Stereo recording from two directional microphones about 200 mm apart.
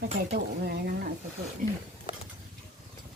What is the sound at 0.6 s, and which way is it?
Speech, 50° right (ahead or behind).